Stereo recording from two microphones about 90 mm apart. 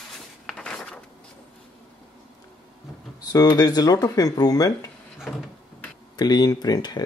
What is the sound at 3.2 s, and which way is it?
Speech, 45° left (ahead or behind).